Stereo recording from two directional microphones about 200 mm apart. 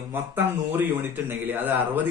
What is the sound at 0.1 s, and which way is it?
A man's voice, 10° right (ahead or behind).